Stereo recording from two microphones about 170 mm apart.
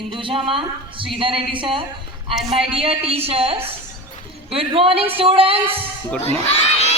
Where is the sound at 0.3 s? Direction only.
30° right (ahead or behind).